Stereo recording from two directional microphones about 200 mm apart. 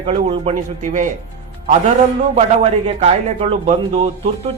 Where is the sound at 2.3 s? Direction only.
30° right (ahead or behind).